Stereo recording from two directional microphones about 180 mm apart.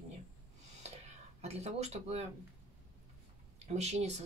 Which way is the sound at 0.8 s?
35° right (ahead or behind).